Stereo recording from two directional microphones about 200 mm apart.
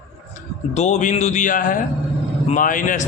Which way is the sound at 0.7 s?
35° left (ahead or behind).